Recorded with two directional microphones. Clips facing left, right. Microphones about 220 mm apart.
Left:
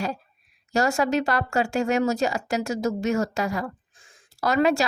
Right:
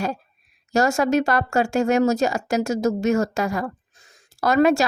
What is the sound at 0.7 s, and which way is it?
Speech, 45° right (ahead or behind).